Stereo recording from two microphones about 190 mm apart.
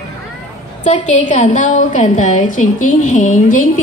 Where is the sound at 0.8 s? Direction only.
40° left (ahead or behind).